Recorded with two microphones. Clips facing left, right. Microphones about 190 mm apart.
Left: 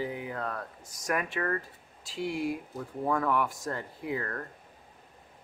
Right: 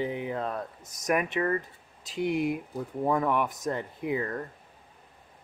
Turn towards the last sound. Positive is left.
turn(degrees=-20)  # may be behind; listen again after turning